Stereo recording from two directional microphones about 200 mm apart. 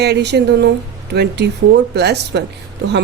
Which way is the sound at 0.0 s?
55° right (ahead or behind).